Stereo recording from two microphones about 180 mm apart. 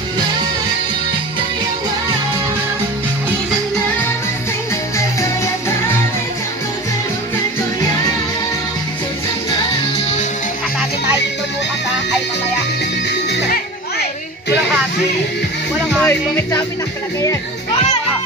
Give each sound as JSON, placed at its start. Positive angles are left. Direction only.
{"t": 13.3, "sound": "music", "side_deg": 70}
{"t": 16.0, "sound": "music", "side_deg": 15}